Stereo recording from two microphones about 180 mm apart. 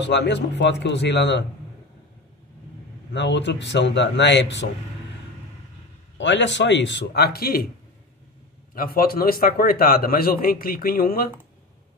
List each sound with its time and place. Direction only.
0.0 s speech: 75° left (ahead or behind)
3.1 s speech: 75° left (ahead or behind)
6.1 s speech: 80° left; by 7.6 s 60° left (ahead or behind)
8.7 s a man's voice: 55° left (ahead or behind)